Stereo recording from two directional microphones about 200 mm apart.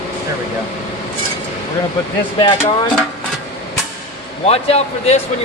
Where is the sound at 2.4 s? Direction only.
25° left (ahead or behind).